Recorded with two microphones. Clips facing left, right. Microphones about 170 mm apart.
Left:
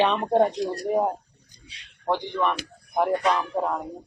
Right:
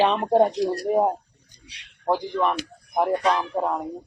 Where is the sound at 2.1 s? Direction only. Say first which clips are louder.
Right 2 dB; 5° right (ahead or behind).